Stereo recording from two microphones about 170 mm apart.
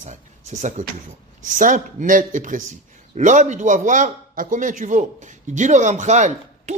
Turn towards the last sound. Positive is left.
turn(degrees=-45)  # may be behind; listen again after turning